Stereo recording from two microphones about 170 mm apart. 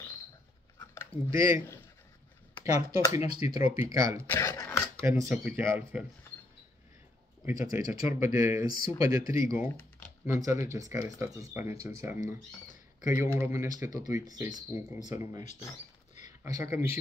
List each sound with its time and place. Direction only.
0.7 s a sound: 15° left (ahead or behind)
1.3 s speech: 15° right (ahead or behind)
3.1 s speech: 20° right (ahead or behind)
4.3 s speech: 15° left (ahead or behind)
5.0 s speech: 15° right (ahead or behind)
7.4 s speech: 15° right (ahead or behind)